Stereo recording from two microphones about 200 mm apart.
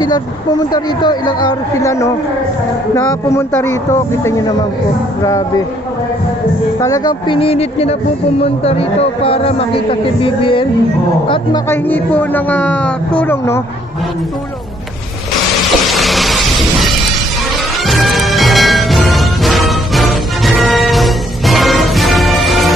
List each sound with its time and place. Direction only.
0.0 s speech: 20° left (ahead or behind)
6.8 s speech: 20° left (ahead or behind)
11.7 s speech: 10° left (ahead or behind)
15.9 s a sound: centre (ahead or behind)
17.8 s music: centre (ahead or behind)